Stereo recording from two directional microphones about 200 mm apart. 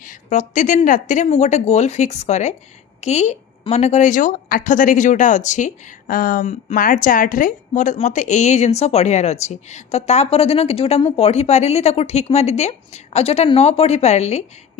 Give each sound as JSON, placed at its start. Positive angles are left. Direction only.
{"t": 0.0, "sound": "a woman's voice", "side_deg": 40}